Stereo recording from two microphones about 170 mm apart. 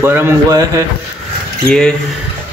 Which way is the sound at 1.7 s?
5° left (ahead or behind).